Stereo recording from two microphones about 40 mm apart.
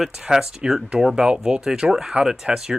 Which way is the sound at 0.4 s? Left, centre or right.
Right.